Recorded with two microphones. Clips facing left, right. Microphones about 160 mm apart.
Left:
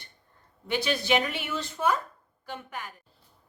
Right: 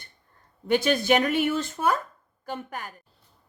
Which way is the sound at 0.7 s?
50° right (ahead or behind).